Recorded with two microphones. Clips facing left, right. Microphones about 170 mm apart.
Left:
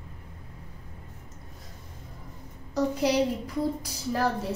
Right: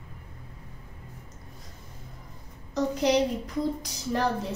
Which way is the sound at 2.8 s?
10° left (ahead or behind).